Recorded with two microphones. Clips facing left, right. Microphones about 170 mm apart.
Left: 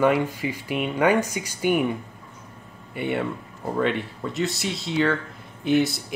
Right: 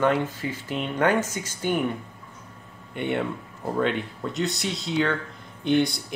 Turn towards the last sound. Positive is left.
turn(degrees=5)  # may be behind; listen again after turning